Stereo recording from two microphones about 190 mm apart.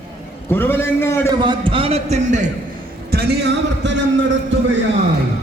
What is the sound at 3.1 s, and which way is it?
Speech, 55° right (ahead or behind).